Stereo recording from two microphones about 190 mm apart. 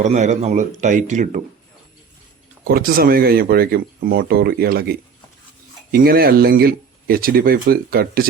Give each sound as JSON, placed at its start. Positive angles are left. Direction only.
{"t": 0.0, "sound": "speech", "side_deg": -40}
{"t": 2.6, "sound": "speech", "side_deg": -50}